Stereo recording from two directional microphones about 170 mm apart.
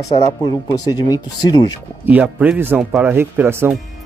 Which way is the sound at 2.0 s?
5° right (ahead or behind).